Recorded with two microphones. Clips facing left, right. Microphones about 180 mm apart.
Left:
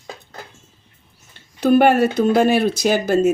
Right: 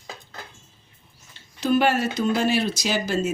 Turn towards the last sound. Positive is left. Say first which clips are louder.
# left 8 dB
turn(degrees=55)  # may be behind; listen again after turning